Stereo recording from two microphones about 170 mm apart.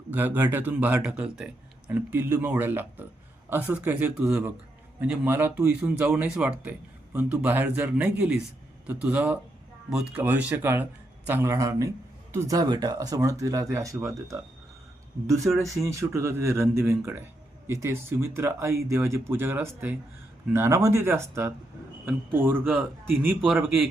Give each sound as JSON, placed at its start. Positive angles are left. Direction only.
{"t": 0.1, "sound": "a man's voice", "side_deg": -10}
{"t": 15.3, "sound": "speech", "side_deg": -15}